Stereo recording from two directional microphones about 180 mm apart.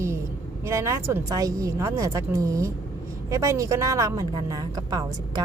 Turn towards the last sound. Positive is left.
turn(degrees=-20)  # may be behind; listen again after turning